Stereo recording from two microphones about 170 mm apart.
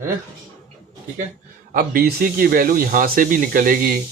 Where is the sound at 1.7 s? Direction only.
60° right (ahead or behind).